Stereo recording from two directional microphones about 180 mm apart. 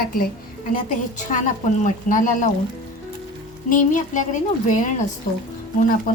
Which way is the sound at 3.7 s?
45° left (ahead or behind).